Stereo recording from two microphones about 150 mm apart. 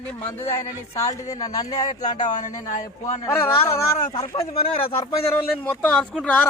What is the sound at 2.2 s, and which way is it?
Speech, 55° left (ahead or behind).